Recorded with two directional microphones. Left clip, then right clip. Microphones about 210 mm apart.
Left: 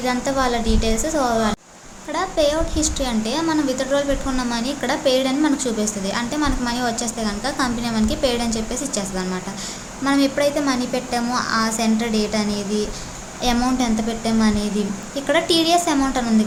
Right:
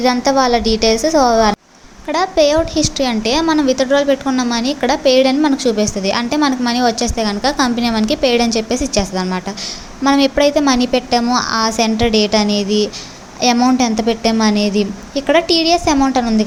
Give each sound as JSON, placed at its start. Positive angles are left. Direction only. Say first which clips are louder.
{"t": 0.0, "sound": "a woman's voice", "louder": "right 7 dB", "side_deg": -35}